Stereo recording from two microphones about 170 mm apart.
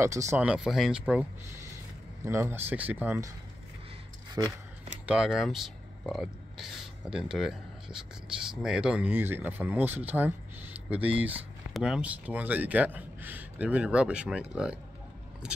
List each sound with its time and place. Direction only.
0.0 s speech: 15° right (ahead or behind)
0.5 s speech: centre (ahead or behind)
4.4 s speech: 15° right (ahead or behind)
5.0 s speech: 5° right (ahead or behind)